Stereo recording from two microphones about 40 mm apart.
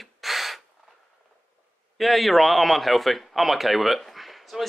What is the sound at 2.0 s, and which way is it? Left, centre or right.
A man's voice, centre.